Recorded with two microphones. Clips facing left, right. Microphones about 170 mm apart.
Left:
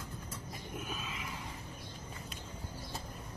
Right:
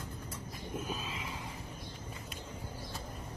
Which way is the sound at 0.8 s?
30° right (ahead or behind).